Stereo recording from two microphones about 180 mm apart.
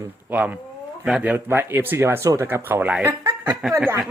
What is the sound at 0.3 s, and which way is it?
Speech, 10° right (ahead or behind).